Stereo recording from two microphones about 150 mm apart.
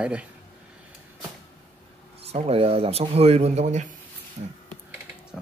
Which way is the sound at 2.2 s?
40° right (ahead or behind).